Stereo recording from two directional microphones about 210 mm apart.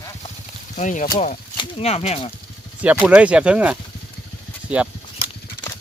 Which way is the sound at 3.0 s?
5° right (ahead or behind).